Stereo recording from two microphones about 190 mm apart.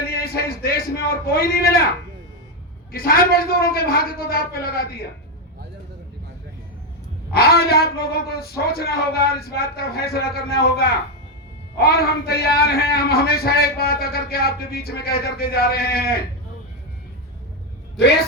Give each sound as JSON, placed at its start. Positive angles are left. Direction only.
{"t": 0.1, "sound": "a man's voice", "side_deg": 55}
{"t": 2.9, "sound": "a man's voice", "side_deg": 50}
{"t": 7.3, "sound": "speech", "side_deg": 55}